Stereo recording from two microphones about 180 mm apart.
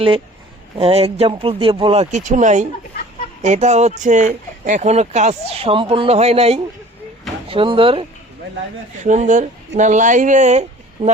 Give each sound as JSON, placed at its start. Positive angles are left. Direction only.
{"t": 0.8, "sound": "speech", "side_deg": -35}
{"t": 9.0, "sound": "speech", "side_deg": -45}